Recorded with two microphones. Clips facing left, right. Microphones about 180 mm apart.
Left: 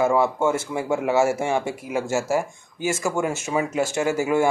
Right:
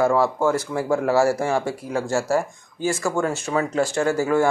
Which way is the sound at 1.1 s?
25° left (ahead or behind).